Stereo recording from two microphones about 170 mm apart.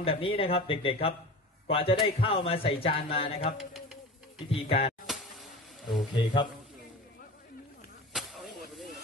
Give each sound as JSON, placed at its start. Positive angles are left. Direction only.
{"t": 0.0, "sound": "speech", "side_deg": 35}
{"t": 5.0, "sound": "a sound", "side_deg": 0}
{"t": 6.1, "sound": "a man's voice", "side_deg": 25}
{"t": 8.1, "sound": "vehicle", "side_deg": 0}